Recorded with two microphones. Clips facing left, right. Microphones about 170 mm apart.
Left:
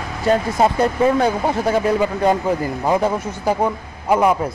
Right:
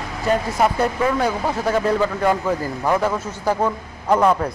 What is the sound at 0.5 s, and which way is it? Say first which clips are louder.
A man's voice: left 2 dB; 25° left (ahead or behind).